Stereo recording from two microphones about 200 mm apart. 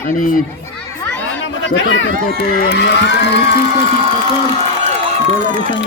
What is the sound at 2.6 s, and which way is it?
Speech, 60° left (ahead or behind).